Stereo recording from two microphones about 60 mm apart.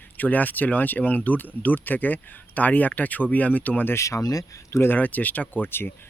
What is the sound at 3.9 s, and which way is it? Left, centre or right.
Speech, left.